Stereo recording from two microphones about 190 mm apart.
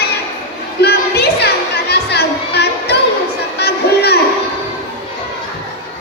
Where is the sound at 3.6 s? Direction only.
60° left (ahead or behind).